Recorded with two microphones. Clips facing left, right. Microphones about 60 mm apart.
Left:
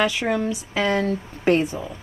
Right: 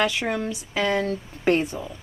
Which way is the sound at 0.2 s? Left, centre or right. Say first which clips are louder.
Left 4 dB; centre.